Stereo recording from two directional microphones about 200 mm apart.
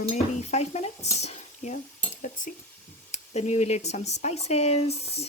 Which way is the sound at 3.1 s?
35° left (ahead or behind).